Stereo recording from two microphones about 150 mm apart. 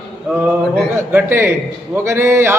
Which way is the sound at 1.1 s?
15° right (ahead or behind).